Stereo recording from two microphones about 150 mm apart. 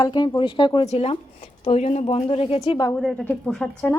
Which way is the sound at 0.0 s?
30° left (ahead or behind).